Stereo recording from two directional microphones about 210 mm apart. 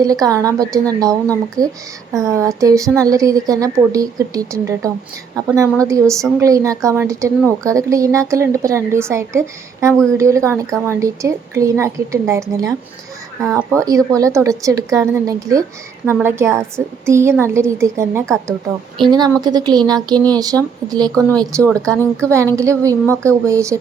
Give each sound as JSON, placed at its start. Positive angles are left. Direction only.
{"t": 0.0, "sound": "a woman's voice", "side_deg": -15}